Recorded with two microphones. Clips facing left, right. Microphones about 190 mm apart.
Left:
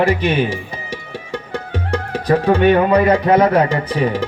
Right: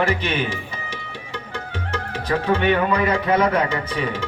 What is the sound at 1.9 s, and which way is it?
Music, 40° left (ahead or behind).